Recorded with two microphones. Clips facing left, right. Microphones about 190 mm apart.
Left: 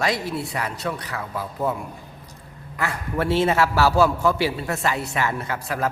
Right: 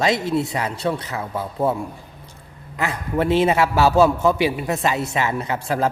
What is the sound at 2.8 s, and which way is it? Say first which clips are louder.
A man's voice: right 3 dB; 20° right (ahead or behind).